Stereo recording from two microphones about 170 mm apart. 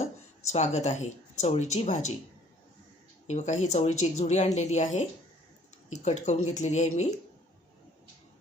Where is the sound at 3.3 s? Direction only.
45° left (ahead or behind).